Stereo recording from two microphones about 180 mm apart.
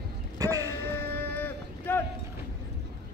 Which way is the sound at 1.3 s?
10° left (ahead or behind).